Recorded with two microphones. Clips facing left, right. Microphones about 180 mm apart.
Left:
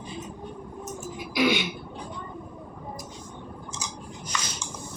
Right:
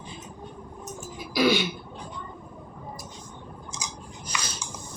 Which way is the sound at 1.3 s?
20° left (ahead or behind).